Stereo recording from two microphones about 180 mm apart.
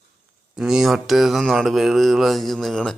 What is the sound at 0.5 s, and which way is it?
Speech, centre (ahead or behind).